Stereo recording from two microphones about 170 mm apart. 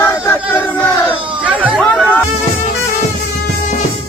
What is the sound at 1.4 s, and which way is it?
Chatter, 10° right (ahead or behind).